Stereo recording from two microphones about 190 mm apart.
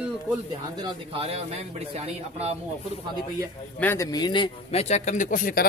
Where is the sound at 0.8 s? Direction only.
30° right (ahead or behind).